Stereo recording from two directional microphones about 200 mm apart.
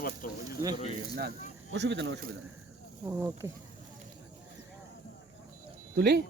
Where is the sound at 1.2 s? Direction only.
55° right (ahead or behind).